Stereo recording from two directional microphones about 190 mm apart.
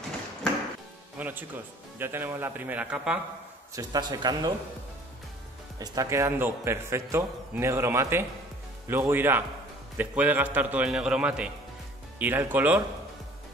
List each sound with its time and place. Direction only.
1.1 s music: 10° right (ahead or behind)
2.0 s a man's voice: 10° right (ahead or behind)
3.7 s speech: 20° right (ahead or behind)
5.8 s a man's voice: 15° right (ahead or behind)